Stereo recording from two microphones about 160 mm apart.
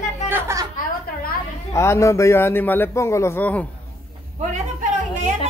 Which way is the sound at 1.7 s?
20° left (ahead or behind).